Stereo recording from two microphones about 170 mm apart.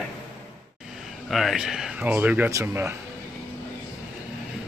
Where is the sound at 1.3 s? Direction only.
Centre (ahead or behind).